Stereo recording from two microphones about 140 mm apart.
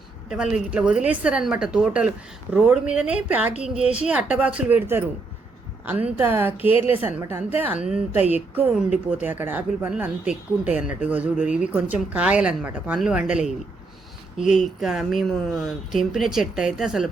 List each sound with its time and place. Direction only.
0.3 s speech: 5° right (ahead or behind)
6.7 s a woman's voice: 40° left (ahead or behind)
7.0 s speech: 15° right (ahead or behind)
14.6 s speech: centre (ahead or behind)